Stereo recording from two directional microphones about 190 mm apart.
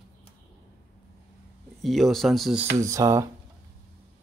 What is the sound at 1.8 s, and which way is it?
Speech, centre (ahead or behind).